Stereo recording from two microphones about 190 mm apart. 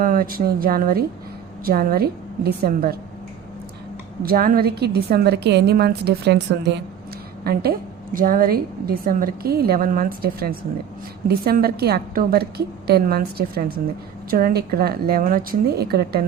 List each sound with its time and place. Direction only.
0.0 s a woman's voice: 50° right (ahead or behind)
4.2 s a woman's voice: 50° right (ahead or behind)
7.4 s a woman's voice: 55° right (ahead or behind)